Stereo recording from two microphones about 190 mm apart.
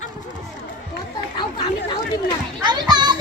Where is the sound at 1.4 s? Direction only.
25° left (ahead or behind).